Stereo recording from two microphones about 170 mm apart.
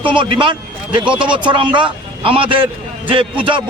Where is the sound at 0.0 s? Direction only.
30° right (ahead or behind).